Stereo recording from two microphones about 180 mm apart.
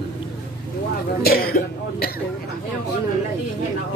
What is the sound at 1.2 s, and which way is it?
Speech, 60° left (ahead or behind).